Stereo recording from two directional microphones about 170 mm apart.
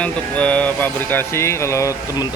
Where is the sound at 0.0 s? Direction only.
5° left (ahead or behind).